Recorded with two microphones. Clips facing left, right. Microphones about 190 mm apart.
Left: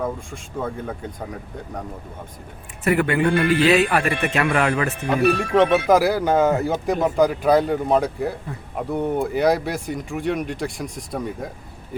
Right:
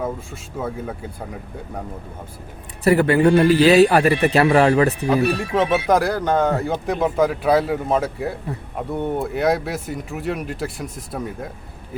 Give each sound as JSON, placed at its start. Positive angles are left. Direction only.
{"t": 0.0, "sound": "speech", "side_deg": -5}
{"t": 2.8, "sound": "speech", "side_deg": -35}
{"t": 5.0, "sound": "speech", "side_deg": 0}